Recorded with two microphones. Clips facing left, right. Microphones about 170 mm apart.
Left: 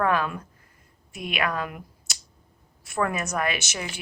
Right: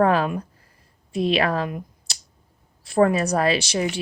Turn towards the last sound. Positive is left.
turn(degrees=-30)  # may be behind; listen again after turning